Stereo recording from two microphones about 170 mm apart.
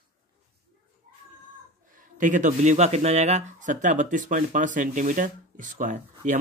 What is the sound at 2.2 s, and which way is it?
Speech, 50° right (ahead or behind).